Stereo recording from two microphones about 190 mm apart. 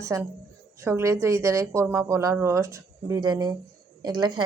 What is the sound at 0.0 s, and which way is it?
A woman's voice, 15° right (ahead or behind).